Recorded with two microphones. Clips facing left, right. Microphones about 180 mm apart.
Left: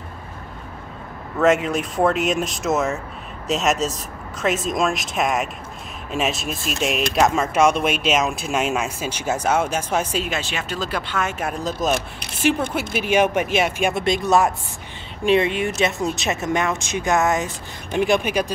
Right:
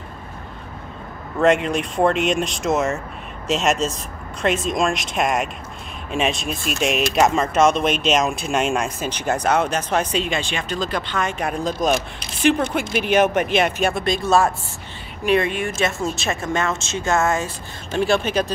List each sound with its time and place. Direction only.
1.4 s a woman's voice: 5° left (ahead or behind)
13.9 s a woman's voice: 20° left (ahead or behind)